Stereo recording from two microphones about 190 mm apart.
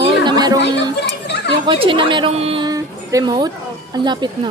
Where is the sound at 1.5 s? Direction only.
25° right (ahead or behind).